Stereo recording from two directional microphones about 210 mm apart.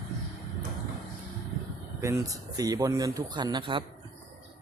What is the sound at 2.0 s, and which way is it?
A man's voice, 15° right (ahead or behind).